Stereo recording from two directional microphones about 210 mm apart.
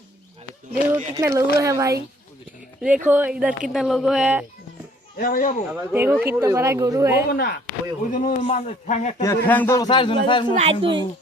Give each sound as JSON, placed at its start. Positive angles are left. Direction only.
{"t": 1.1, "sound": "speech", "side_deg": -15}
{"t": 5.2, "sound": "a man's voice", "side_deg": 40}
{"t": 5.7, "sound": "speech", "side_deg": -10}
{"t": 7.3, "sound": "speech", "side_deg": 50}
{"t": 8.1, "sound": "a man's voice", "side_deg": 40}
{"t": 9.2, "sound": "a man's voice", "side_deg": 10}
{"t": 10.5, "sound": "speech", "side_deg": -30}